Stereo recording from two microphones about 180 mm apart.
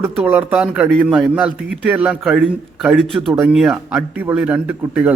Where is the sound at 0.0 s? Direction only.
10° right (ahead or behind).